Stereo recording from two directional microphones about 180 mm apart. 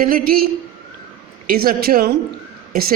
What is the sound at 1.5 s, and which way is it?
A woman's voice, 55° right (ahead or behind).